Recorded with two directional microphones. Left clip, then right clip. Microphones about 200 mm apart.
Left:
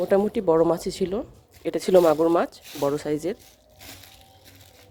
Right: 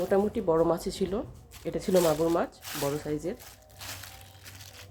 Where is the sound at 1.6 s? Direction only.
55° left (ahead or behind).